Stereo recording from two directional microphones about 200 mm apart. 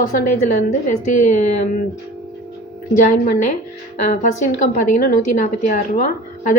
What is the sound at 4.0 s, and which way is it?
A woman's voice, 40° left (ahead or behind).